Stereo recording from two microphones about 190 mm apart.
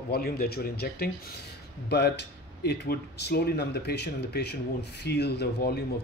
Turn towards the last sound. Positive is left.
turn(degrees=55)  # may be behind; listen again after turning